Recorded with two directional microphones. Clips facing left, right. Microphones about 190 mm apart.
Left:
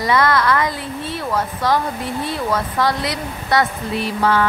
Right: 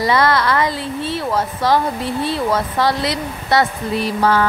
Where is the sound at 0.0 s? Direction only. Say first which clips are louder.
Right 1 dB; 30° right (ahead or behind).